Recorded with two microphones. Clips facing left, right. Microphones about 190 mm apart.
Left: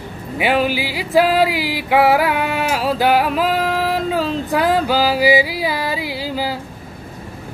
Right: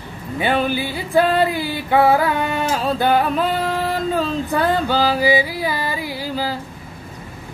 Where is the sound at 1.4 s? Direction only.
90° left.